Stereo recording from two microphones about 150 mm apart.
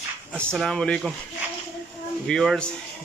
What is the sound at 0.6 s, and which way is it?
Speech, 5° left (ahead or behind).